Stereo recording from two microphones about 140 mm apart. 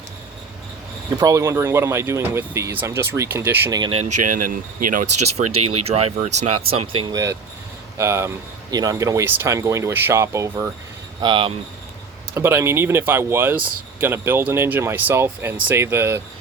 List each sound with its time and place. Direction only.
1.1 s speech: 25° right (ahead or behind)
4.3 s speech: 80° right
5.8 s speech: 45° right (ahead or behind)
7.1 s speech: 25° right (ahead or behind)
11.2 s speech: 35° right (ahead or behind)
12.3 s speech: 20° right (ahead or behind)